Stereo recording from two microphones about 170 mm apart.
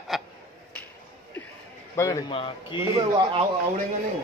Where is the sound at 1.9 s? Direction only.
15° left (ahead or behind).